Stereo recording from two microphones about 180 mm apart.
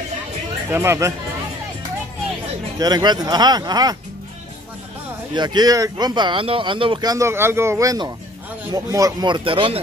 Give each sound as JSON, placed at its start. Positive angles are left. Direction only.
{"t": 0.7, "sound": "speech", "side_deg": -15}
{"t": 2.8, "sound": "speech", "side_deg": -25}
{"t": 5.3, "sound": "speech", "side_deg": -25}